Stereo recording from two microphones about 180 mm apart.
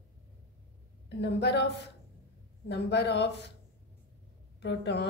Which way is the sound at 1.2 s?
70° left (ahead or behind).